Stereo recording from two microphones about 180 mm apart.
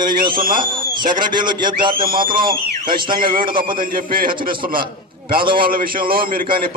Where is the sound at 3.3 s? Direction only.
50° right (ahead or behind).